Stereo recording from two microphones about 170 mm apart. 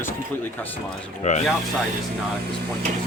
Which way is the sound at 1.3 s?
45° left (ahead or behind).